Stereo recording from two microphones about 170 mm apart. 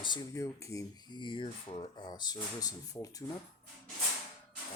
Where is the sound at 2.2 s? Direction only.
20° left (ahead or behind).